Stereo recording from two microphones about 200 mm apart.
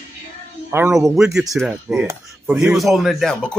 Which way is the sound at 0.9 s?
Centre (ahead or behind).